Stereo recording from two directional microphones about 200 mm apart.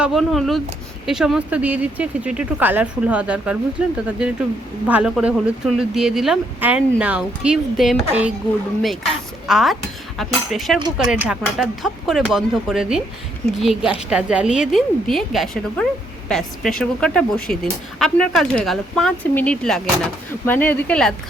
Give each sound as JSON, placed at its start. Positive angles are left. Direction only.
{"t": 0.0, "sound": "a woman's voice", "side_deg": 0}
{"t": 9.5, "sound": "a woman's voice", "side_deg": 0}